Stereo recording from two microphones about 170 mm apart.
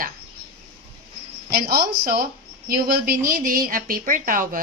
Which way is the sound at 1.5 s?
65° right (ahead or behind).